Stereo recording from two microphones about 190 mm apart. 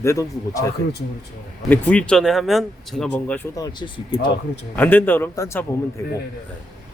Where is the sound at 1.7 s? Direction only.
10° left (ahead or behind).